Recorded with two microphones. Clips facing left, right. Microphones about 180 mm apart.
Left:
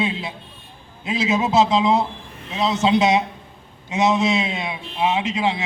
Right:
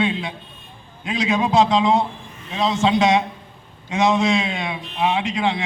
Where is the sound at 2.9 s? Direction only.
20° left (ahead or behind).